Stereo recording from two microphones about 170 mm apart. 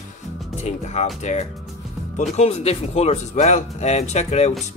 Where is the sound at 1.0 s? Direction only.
40° left (ahead or behind).